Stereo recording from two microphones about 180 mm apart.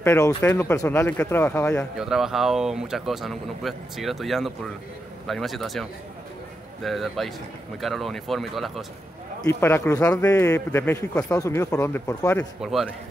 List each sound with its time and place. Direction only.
0.0 s a man's voice: 15° left (ahead or behind); by 8.8 s centre (ahead or behind)
9.4 s a man's voice: 15° left (ahead or behind)
12.6 s speech: centre (ahead or behind)